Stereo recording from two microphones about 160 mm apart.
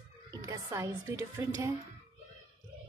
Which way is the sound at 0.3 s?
20° right (ahead or behind).